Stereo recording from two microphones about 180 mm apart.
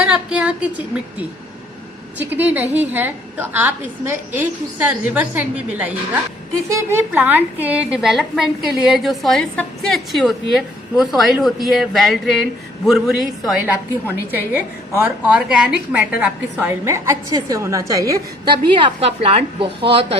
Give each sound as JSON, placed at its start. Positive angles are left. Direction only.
{"t": 0.0, "sound": "a woman's voice", "side_deg": -5}
{"t": 2.1, "sound": "a woman's voice", "side_deg": -10}